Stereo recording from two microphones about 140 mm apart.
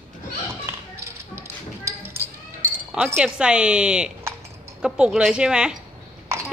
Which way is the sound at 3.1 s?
5° right (ahead or behind).